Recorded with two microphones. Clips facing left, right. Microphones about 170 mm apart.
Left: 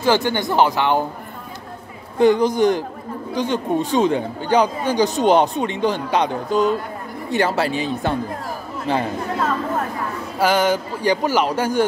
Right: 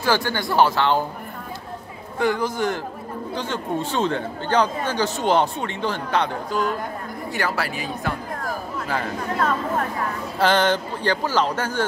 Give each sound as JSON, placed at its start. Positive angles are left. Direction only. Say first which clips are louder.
{"t": 0.0, "sound": "speech", "louder": "left 4 dB", "side_deg": 20}
{"t": 2.1, "sound": "speech", "louder": "left 7 dB", "side_deg": 20}
{"t": 10.4, "sound": "speech", "louder": "left 2 dB", "side_deg": 10}